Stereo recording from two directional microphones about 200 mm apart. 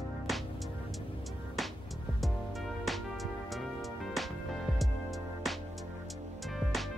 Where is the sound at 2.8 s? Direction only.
Centre (ahead or behind).